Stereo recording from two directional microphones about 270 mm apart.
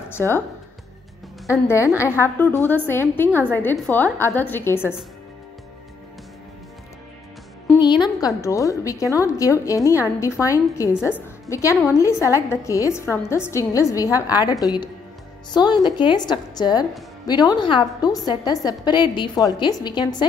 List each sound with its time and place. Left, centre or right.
0.1 s speech: centre
1.5 s a woman's voice: centre
7.8 s a woman's voice: centre
11.0 s a woman's voice: centre
11.4 s a woman's voice: centre